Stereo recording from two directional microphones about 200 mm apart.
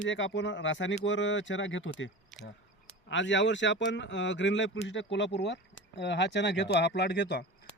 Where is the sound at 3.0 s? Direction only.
65° left (ahead or behind).